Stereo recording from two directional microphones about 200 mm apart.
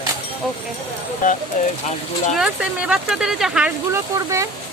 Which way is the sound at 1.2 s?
40° left (ahead or behind).